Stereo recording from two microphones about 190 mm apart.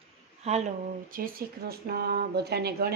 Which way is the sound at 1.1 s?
50° right (ahead or behind).